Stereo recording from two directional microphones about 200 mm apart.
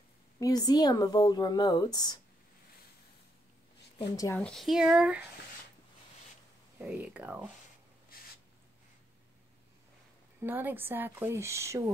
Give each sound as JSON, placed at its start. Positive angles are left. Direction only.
{"t": 0.4, "sound": "speech", "side_deg": 20}
{"t": 4.2, "sound": "speech", "side_deg": 10}
{"t": 6.8, "sound": "speech", "side_deg": -5}
{"t": 10.4, "sound": "speech", "side_deg": -10}